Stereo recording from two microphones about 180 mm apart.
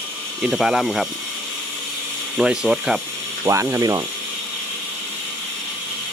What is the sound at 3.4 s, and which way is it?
Speech, 15° right (ahead or behind).